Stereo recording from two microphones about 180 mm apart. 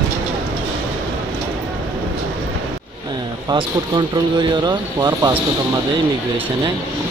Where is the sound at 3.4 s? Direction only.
25° right (ahead or behind).